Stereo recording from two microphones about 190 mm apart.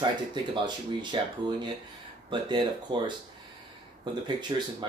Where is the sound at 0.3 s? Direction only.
25° right (ahead or behind).